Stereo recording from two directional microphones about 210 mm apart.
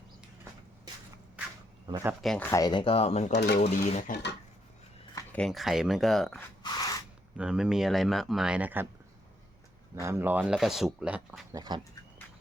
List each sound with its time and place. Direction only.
2.2 s speech: 5° left (ahead or behind)
2.5 s speech: 20° left (ahead or behind)
3.3 s speech: 50° left (ahead or behind)
3.6 s speech: 35° left (ahead or behind)
4.1 s speech: 55° left (ahead or behind)
5.1 s speech: 5° left (ahead or behind)
6.6 s a sound: 20° left (ahead or behind)
7.3 s speech: 5° right (ahead or behind)
9.9 s speech: 10° right (ahead or behind)
11.5 s speech: 20° right (ahead or behind)